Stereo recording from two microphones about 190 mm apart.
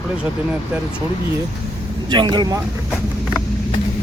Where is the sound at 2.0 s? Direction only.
25° right (ahead or behind).